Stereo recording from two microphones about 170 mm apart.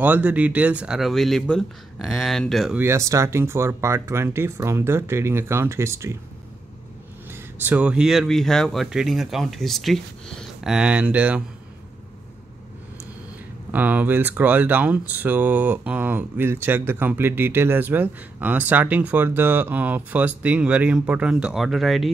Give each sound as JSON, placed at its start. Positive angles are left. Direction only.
{"t": 0.0, "sound": "speech", "side_deg": -10}
{"t": 2.8, "sound": "speech", "side_deg": -15}
{"t": 7.2, "sound": "speech", "side_deg": -10}
{"t": 13.7, "sound": "speech", "side_deg": -10}